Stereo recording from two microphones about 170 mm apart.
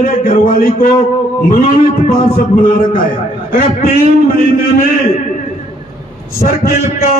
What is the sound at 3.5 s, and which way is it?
Speech, 60° left (ahead or behind).